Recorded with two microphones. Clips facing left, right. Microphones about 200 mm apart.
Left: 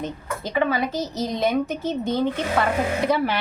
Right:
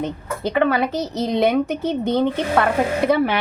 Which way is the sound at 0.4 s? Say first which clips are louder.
Right 4 dB; 60° right (ahead or behind).